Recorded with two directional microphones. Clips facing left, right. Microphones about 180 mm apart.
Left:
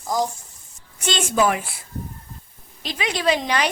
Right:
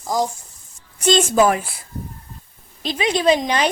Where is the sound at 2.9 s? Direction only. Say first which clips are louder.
Right 5 dB; 25° right (ahead or behind).